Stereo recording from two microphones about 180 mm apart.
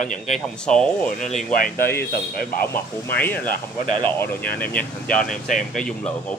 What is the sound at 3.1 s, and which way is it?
Speech, 10° left (ahead or behind).